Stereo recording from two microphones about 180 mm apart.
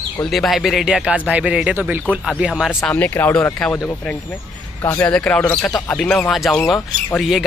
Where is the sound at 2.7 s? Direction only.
10° left (ahead or behind).